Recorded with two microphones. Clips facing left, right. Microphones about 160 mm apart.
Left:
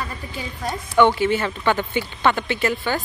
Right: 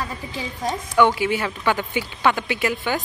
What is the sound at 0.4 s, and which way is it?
Speech, 10° right (ahead or behind).